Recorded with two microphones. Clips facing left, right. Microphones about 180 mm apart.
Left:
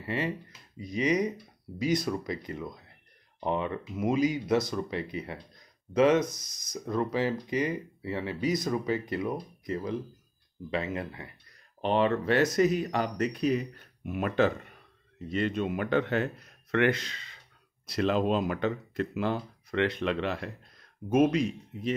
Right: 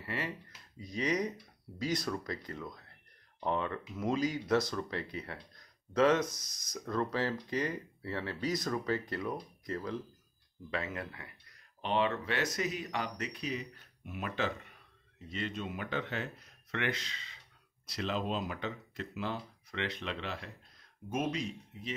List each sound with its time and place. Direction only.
0.0 s speech: 20° left (ahead or behind)
11.8 s speech: 45° left (ahead or behind); by 21.9 s 65° left (ahead or behind)